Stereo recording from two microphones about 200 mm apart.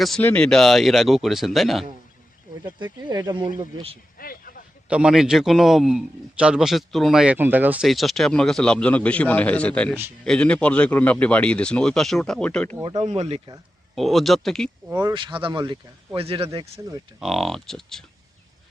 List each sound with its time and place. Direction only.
0.0 s a man's voice: 5° left (ahead or behind)
2.7 s speech: 20° right (ahead or behind)
4.2 s vehicle: 45° left (ahead or behind)
4.9 s a man's voice: 5° right (ahead or behind)
12.8 s speech: 25° right (ahead or behind)
13.9 s a man's voice: centre (ahead or behind)
14.8 s speech: 20° right (ahead or behind)
17.2 s a man's voice: centre (ahead or behind)